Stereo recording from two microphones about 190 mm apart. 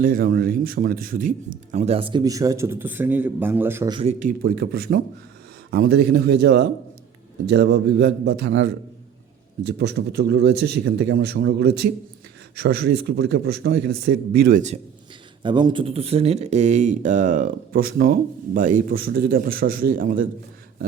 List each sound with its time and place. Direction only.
0.0 s speech: 50° right (ahead or behind); by 3.9 s 10° right (ahead or behind)
4.2 s a man's voice: 45° right (ahead or behind)
15.4 s speech: 25° right (ahead or behind); by 20.2 s 45° right (ahead or behind)